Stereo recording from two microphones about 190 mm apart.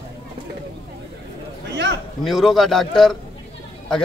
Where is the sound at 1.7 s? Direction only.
65° right (ahead or behind).